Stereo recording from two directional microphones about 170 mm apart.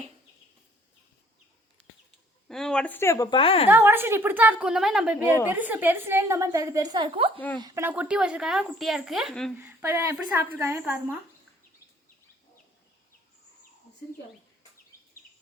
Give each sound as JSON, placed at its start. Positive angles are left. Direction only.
{"t": 2.5, "sound": "speech", "side_deg": 5}
{"t": 3.7, "sound": "a woman's voice", "side_deg": -10}
{"t": 7.3, "sound": "speech", "side_deg": 10}
{"t": 7.6, "sound": "speech", "side_deg": -20}
{"t": 9.6, "sound": "a woman's voice", "side_deg": -15}